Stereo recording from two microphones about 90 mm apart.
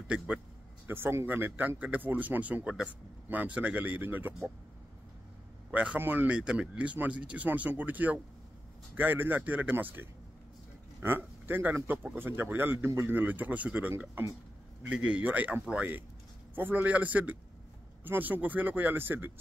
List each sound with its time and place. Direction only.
0.8 s speech: 25° right (ahead or behind)
5.7 s a man's voice: 10° right (ahead or behind)